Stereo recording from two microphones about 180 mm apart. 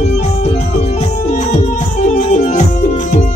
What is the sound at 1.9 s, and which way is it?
Music, 45° left (ahead or behind).